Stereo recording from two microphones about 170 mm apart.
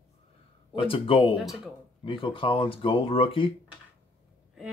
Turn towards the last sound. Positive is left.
turn(degrees=30)  # may be behind; listen again after turning